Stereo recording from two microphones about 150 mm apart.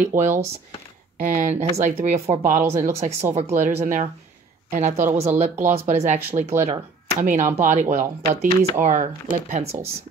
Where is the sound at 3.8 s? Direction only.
60° right (ahead or behind).